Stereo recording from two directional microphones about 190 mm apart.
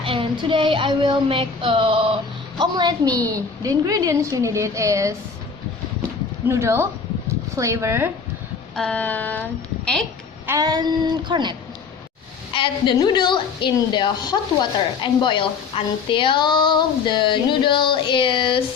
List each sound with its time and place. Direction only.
0.0 s child singing: 25° right (ahead or behind)
2.6 s a woman's voice: 20° right (ahead or behind)
6.5 s a woman's voice: 15° right (ahead or behind)
8.7 s speech: 5° left (ahead or behind)
10.4 s child singing: 15° right (ahead or behind)
12.5 s a woman's voice: 25° left (ahead or behind)